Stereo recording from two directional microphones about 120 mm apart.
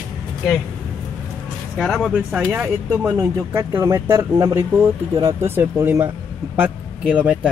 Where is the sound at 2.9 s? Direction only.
25° right (ahead or behind).